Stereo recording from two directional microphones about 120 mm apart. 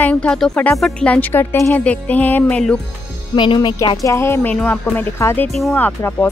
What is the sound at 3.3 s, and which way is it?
Speech, 40° left (ahead or behind).